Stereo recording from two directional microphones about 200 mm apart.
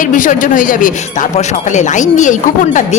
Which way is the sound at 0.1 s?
40° left (ahead or behind).